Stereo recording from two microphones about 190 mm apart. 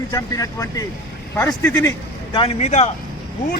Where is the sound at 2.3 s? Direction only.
30° left (ahead or behind).